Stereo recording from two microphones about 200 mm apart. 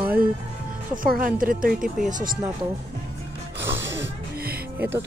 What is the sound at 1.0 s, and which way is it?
Speech, 45° right (ahead or behind).